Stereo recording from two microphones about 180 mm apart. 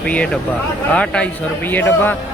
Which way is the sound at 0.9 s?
5° left (ahead or behind).